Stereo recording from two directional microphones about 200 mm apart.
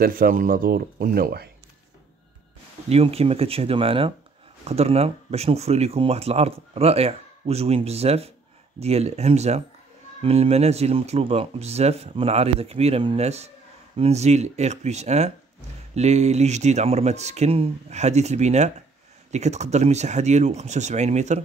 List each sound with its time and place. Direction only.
0.0 s speech: 45° right (ahead or behind)
2.9 s speech: 30° right (ahead or behind)